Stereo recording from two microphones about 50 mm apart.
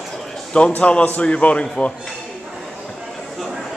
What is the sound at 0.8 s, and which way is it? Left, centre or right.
Speech, left.